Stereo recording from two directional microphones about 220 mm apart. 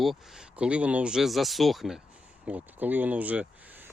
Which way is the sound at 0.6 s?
5° right (ahead or behind).